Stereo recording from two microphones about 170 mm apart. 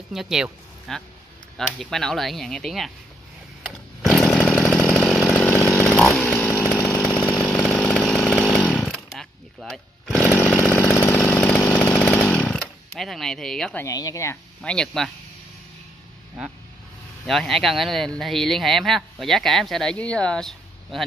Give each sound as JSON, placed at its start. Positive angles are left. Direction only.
{"t": 0.1, "sound": "speech", "side_deg": -5}
{"t": 4.0, "sound": "chainsaw", "side_deg": 0}
{"t": 13.8, "sound": "speech", "side_deg": 20}
{"t": 14.6, "sound": "speech", "side_deg": 5}
{"t": 17.3, "sound": "speech", "side_deg": 0}